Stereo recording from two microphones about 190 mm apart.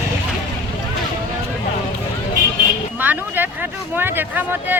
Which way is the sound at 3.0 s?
10° right (ahead or behind).